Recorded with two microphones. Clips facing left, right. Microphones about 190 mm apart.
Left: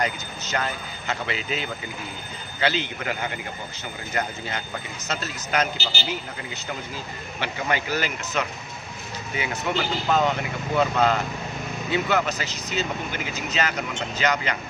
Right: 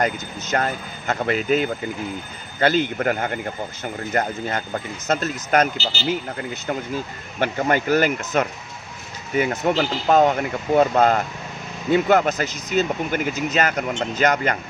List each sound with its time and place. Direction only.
0.0 s speech: 50° right (ahead or behind)